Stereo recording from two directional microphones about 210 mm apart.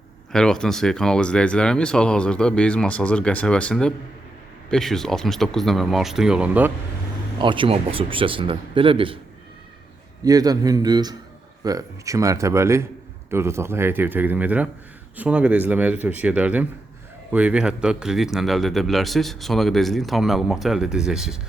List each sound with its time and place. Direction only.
0.3 s speech: 5° left (ahead or behind)
7.3 s a man's voice: 25° right (ahead or behind)
10.2 s a man's voice: 15° right (ahead or behind)